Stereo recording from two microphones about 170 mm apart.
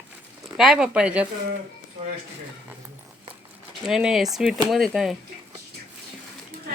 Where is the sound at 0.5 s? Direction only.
5° right (ahead or behind).